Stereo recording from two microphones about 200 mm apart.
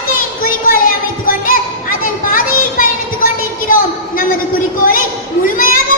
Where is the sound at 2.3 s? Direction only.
45° left (ahead or behind).